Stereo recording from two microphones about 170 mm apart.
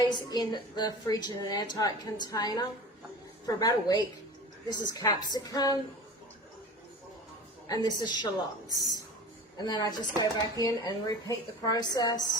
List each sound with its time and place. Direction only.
0.0 s a woman's voice: 25° left (ahead or behind)
7.7 s a woman's voice: 25° left (ahead or behind)
9.6 s a woman's voice: 25° left (ahead or behind)